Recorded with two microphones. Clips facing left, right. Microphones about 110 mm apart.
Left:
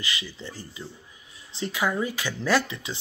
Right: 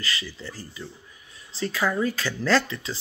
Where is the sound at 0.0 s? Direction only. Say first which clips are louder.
Right 1 dB; 15° left (ahead or behind).